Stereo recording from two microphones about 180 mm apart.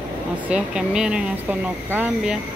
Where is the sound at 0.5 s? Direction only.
5° right (ahead or behind).